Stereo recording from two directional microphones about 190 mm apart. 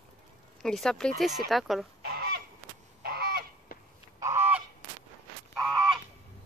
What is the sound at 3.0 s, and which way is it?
Goose, 50° right (ahead or behind).